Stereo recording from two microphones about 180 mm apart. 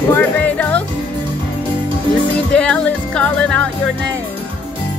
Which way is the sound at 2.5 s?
5° left (ahead or behind).